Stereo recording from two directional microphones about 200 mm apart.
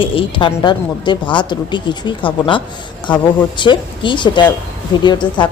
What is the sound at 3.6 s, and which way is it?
Speech, 25° left (ahead or behind).